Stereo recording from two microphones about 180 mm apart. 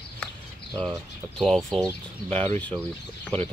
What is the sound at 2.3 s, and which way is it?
Speech, 35° right (ahead or behind).